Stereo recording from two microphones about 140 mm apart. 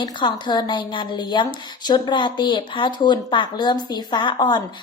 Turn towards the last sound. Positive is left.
turn(degrees=30)  # may be behind; listen again after turning